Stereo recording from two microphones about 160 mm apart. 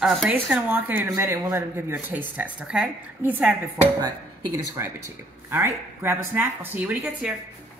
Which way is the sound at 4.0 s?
25° right (ahead or behind).